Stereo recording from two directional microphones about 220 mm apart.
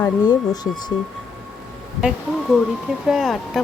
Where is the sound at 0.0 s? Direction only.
15° left (ahead or behind).